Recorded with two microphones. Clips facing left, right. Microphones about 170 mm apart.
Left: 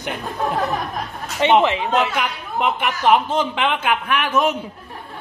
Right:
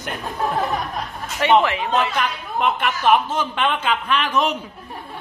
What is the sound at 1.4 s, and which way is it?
Speech, 20° left (ahead or behind).